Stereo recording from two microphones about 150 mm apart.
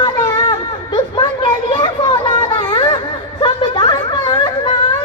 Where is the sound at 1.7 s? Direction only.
35° left (ahead or behind).